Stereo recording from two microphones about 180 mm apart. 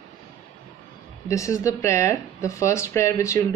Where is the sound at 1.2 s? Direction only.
15° left (ahead or behind).